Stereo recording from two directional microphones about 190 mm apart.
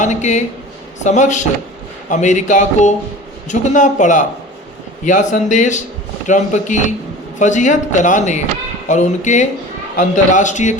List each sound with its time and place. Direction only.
0.0 s speech: 40° left (ahead or behind)